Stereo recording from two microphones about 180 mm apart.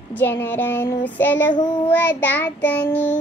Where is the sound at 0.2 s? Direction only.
10° left (ahead or behind).